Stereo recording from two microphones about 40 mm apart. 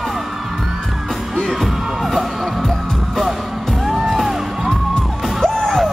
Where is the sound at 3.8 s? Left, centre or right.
Centre.